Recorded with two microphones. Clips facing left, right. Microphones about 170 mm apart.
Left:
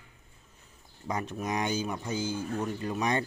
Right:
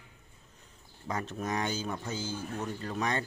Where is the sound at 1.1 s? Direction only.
15° left (ahead or behind).